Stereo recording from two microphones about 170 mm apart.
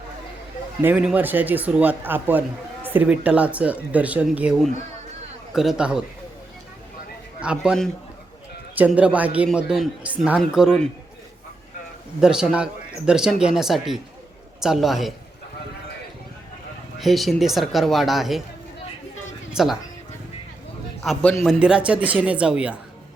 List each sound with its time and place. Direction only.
0.8 s a woman's voice: 10° right (ahead or behind)
7.3 s speech: 5° right (ahead or behind)
8.9 s a woman's voice: 5° right (ahead or behind)
12.2 s speech: 5° right (ahead or behind)
17.0 s speech: centre (ahead or behind)
19.5 s speech: 5° right (ahead or behind)
21.0 s a woman's voice: 5° left (ahead or behind)